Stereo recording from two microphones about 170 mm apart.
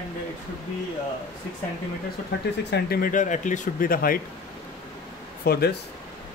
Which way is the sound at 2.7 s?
60° left (ahead or behind).